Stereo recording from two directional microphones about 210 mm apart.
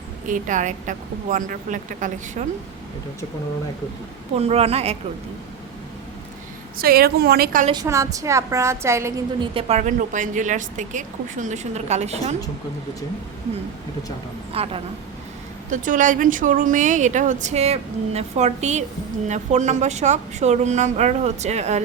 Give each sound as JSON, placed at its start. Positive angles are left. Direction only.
{"t": 0.3, "sound": "a woman's voice", "side_deg": -40}
{"t": 4.4, "sound": "a woman's voice", "side_deg": -30}
{"t": 6.7, "sound": "a woman's voice", "side_deg": -45}
{"t": 7.7, "sound": "a woman's voice", "side_deg": -15}
{"t": 14.5, "sound": "a woman's voice", "side_deg": -30}
{"t": 15.7, "sound": "a woman's voice", "side_deg": -40}